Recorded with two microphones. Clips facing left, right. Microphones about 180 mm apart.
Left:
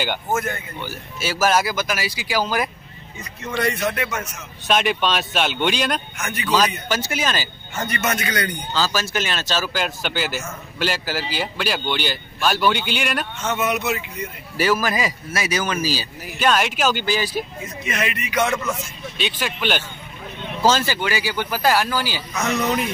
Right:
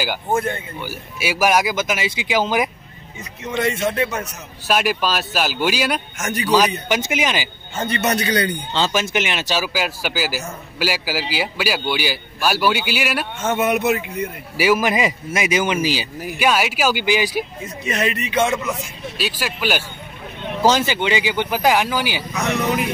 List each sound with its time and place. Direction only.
0.3 s speech: 30° right (ahead or behind)
0.7 s a man's voice: 10° right (ahead or behind); by 4.3 s 30° right (ahead or behind)
4.6 s speech: 5° right (ahead or behind)
6.1 s speech: 40° right (ahead or behind)
6.9 s a man's voice: 15° right (ahead or behind)
7.7 s a man's voice: 30° right (ahead or behind); by 13.3 s 5° right (ahead or behind)
13.4 s a man's voice: 50° right (ahead or behind)
14.6 s a man's voice: 15° right (ahead or behind)
17.8 s a man's voice: 35° right (ahead or behind); by 18.9 s 15° right (ahead or behind)
19.1 s a man's voice: 5° right (ahead or behind)
20.6 s a man's voice: 20° right (ahead or behind)